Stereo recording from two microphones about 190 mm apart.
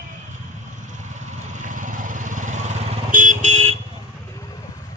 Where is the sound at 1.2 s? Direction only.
40° right (ahead or behind).